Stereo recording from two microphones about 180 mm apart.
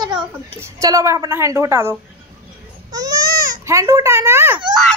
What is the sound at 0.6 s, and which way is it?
A woman's voice, 20° right (ahead or behind).